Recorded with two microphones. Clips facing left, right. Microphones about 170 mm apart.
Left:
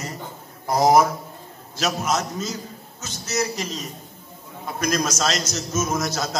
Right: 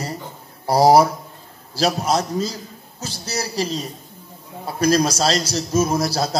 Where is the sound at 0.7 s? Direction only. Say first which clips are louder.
Right 3 dB; 35° right (ahead or behind).